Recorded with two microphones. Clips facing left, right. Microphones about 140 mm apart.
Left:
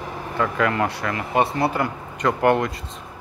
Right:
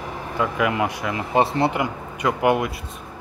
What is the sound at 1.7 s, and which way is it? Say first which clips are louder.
Speech: even; 10° right (ahead or behind).